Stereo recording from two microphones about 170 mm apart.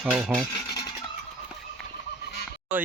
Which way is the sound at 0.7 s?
25° left (ahead or behind).